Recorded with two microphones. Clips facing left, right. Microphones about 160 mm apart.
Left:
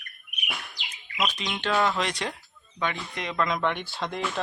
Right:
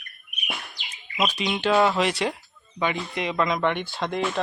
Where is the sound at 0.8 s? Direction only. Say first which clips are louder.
Right 4 dB; 10° right (ahead or behind).